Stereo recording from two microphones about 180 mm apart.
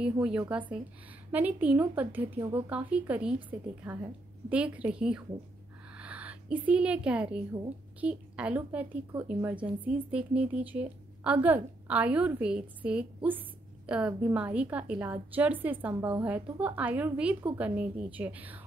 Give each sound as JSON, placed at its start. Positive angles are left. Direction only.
{"t": 0.0, "sound": "a woman's voice", "side_deg": -5}